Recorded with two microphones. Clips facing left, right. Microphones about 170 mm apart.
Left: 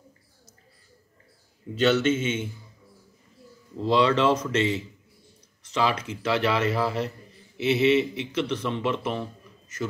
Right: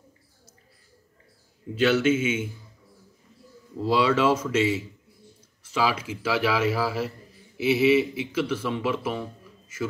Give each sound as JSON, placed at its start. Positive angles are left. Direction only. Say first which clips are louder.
{"t": 1.8, "sound": "speech", "louder": "right 1 dB", "side_deg": -10}
{"t": 3.7, "sound": "a man's voice", "louder": "left 1 dB", "side_deg": -5}